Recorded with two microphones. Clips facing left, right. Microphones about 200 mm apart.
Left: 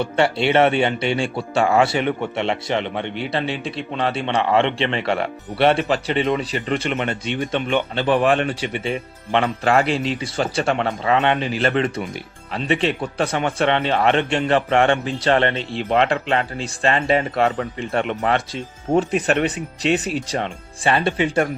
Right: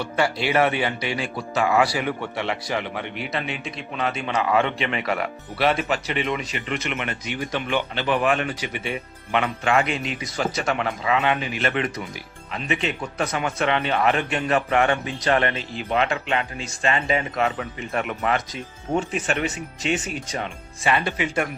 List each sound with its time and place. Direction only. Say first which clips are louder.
0.0 s speech: left 5 dB; 25° left (ahead or behind)